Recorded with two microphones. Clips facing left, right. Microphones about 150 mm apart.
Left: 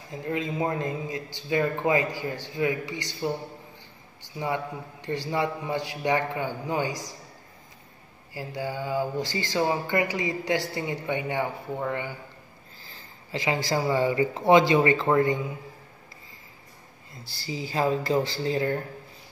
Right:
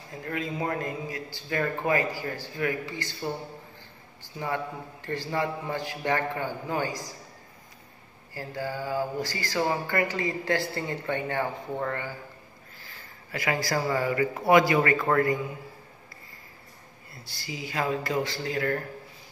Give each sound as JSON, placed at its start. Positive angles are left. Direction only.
{"t": 0.1, "sound": "a man's voice", "side_deg": 20}
{"t": 8.4, "sound": "speech", "side_deg": 15}
{"t": 17.1, "sound": "a man's voice", "side_deg": 30}